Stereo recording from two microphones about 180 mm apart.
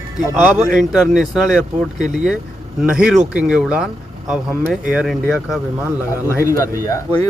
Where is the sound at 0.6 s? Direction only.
Centre (ahead or behind).